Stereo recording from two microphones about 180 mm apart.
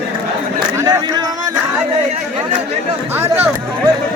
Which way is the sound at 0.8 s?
15° right (ahead or behind).